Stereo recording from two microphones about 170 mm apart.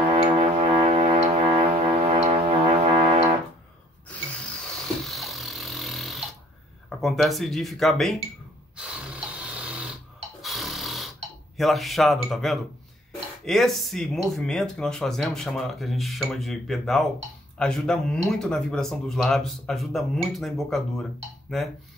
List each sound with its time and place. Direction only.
0.1 s music: 40° right (ahead or behind)
5.0 s vehicle: centre (ahead or behind)
7.0 s speech: centre (ahead or behind)
8.7 s snoring: 5° right (ahead or behind)
10.4 s a sound: centre (ahead or behind)
11.5 s speech: centre (ahead or behind)